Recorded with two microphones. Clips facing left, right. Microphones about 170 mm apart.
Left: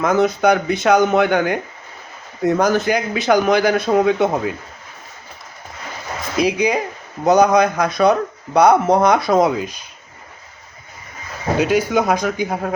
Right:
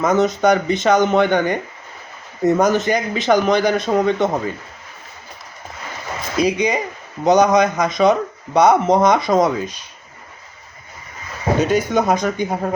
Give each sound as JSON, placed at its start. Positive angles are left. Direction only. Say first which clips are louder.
{"t": 0.0, "sound": "speech", "louder": "even", "side_deg": 0}
{"t": 6.4, "sound": "speech", "louder": "left 1 dB", "side_deg": 5}
{"t": 11.5, "sound": "speech", "louder": "left 1 dB", "side_deg": 5}